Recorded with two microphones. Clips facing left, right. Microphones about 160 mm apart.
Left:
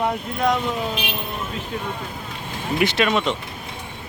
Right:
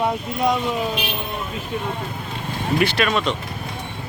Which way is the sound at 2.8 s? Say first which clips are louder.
Left 2 dB; 20° left (ahead or behind).